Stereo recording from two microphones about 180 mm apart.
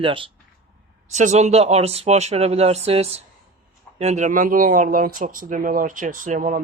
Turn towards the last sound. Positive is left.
turn(degrees=-45)  # may be behind; listen again after turning